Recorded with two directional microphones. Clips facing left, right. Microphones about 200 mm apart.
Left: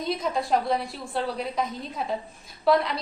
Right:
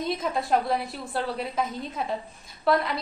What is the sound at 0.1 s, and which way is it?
A woman's voice, centre (ahead or behind).